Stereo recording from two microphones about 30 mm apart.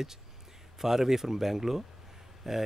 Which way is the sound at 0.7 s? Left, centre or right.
Centre.